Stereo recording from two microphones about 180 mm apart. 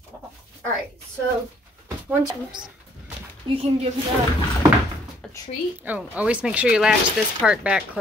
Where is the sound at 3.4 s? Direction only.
35° right (ahead or behind).